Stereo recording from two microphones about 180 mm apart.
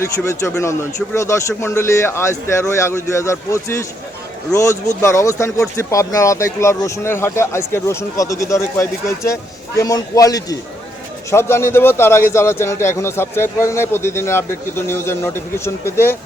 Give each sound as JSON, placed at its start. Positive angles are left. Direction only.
{"t": 0.0, "sound": "speech", "side_deg": 15}